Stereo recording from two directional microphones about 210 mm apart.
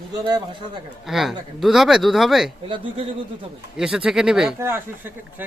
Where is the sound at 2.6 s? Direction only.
25° right (ahead or behind).